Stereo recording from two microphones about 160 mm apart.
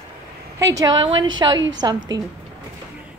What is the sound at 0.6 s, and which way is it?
A woman's voice, 20° right (ahead or behind).